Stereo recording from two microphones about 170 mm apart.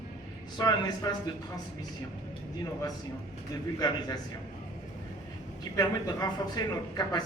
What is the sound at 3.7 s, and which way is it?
Speech, 20° left (ahead or behind).